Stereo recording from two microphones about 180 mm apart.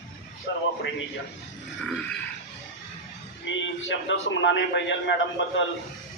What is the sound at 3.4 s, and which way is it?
A man's voice, 90° left.